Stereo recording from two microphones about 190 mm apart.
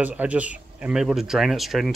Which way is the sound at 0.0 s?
5° right (ahead or behind).